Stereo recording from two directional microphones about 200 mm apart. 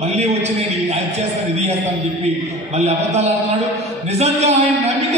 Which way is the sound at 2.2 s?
30° right (ahead or behind).